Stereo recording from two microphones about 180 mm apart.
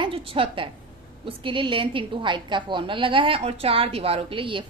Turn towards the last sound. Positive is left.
turn(degrees=-30)  # may be behind; listen again after turning